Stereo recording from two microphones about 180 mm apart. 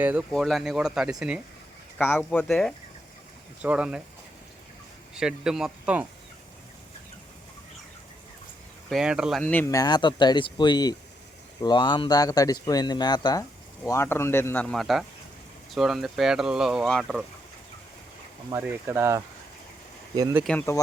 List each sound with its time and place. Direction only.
0.0 s speech: 10° right (ahead or behind)
0.3 s speech: centre (ahead or behind)
2.0 s speech: 10° left (ahead or behind)
3.6 s speech: 5° right (ahead or behind)
5.1 s speech: 5° right (ahead or behind)
8.9 s speech: 5° right (ahead or behind)
9.4 s speech: 10° left (ahead or behind)
18.5 s speech: 10° right (ahead or behind)
20.4 s speech: 10° left (ahead or behind)